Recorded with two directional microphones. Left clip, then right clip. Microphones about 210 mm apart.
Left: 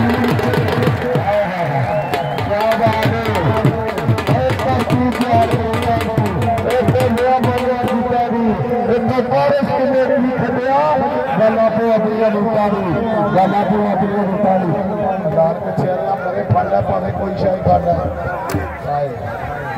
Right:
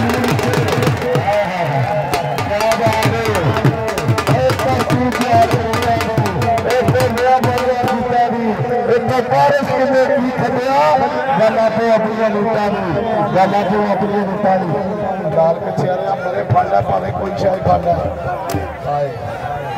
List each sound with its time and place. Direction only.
0.8 s music: 45° right (ahead or behind)
2.6 s music: 50° right (ahead or behind)
4.3 s music: 50° right (ahead or behind)
6.9 s music: 30° right (ahead or behind)
8.8 s a sound: 55° right (ahead or behind)